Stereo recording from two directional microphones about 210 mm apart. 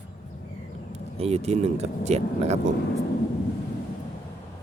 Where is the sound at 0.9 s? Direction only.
30° right (ahead or behind).